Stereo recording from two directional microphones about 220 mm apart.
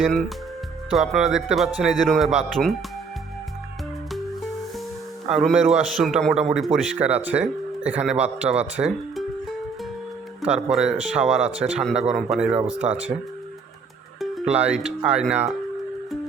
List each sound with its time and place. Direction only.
0.9 s speech: centre (ahead or behind)
5.3 s speech: centre (ahead or behind)
8.5 s music: 5° right (ahead or behind)
10.4 s speech: 5° right (ahead or behind)
14.2 s speech: centre (ahead or behind)